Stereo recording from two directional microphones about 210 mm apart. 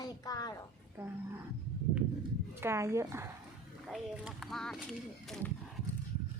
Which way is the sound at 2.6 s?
10° right (ahead or behind).